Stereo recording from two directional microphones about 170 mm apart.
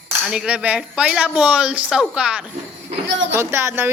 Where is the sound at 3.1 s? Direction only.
90° right.